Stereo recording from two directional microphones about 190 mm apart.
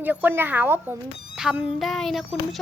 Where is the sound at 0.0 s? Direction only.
10° right (ahead or behind).